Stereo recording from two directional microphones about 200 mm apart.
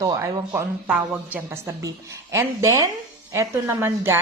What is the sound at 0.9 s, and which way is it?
A woman's voice, 5° right (ahead or behind).